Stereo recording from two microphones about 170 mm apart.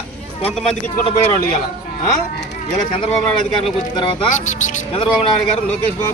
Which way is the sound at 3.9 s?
25° left (ahead or behind).